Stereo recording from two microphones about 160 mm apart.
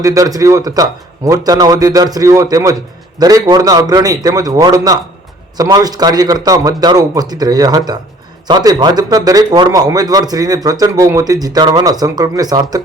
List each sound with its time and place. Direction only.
0.0 s a man's voice: 20° right (ahead or behind)